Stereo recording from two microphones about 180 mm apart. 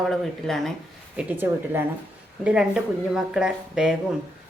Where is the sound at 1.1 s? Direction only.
10° right (ahead or behind).